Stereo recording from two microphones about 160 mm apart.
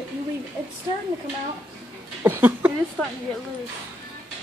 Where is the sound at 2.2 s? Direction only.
15° right (ahead or behind).